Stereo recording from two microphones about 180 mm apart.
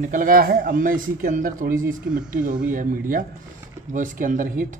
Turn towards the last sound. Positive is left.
turn(degrees=-50)  # may be behind; listen again after turning